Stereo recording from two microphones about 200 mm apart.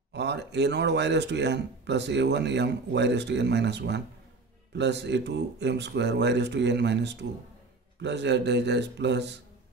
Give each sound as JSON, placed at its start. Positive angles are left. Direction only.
{"t": 0.1, "sound": "speech", "side_deg": -60}